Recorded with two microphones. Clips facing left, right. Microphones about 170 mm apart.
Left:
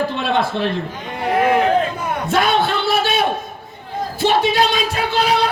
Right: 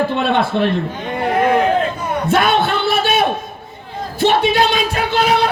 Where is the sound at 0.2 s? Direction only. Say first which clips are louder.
Right 3 dB; 60° right (ahead or behind).